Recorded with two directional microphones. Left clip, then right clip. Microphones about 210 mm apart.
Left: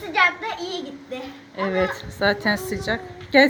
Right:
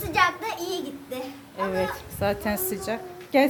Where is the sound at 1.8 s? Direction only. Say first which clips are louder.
Left 5 dB; 15° left (ahead or behind).